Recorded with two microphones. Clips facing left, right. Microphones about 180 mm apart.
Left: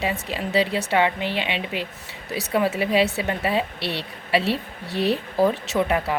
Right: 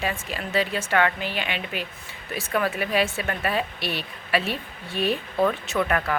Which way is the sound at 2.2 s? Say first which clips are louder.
Left 3 dB; 75° left (ahead or behind).